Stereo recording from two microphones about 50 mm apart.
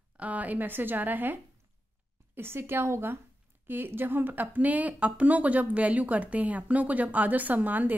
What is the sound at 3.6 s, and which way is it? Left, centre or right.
Speech, right.